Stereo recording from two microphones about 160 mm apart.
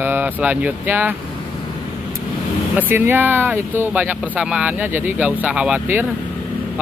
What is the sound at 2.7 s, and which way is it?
Speech, 10° right (ahead or behind).